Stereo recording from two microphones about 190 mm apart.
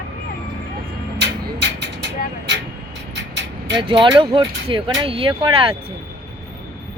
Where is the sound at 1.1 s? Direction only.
65° right (ahead or behind).